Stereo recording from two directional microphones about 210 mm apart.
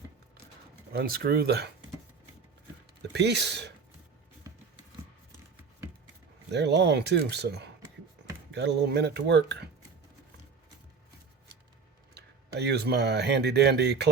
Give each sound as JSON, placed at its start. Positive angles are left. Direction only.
{"t": 0.9, "sound": "speech", "side_deg": -45}
{"t": 3.0, "sound": "speech", "side_deg": -55}
{"t": 6.5, "sound": "speech", "side_deg": -55}
{"t": 12.1, "sound": "speech", "side_deg": -50}